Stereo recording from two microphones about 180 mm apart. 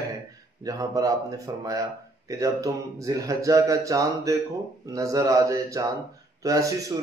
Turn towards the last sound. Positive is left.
turn(degrees=-20)  # may be behind; listen again after turning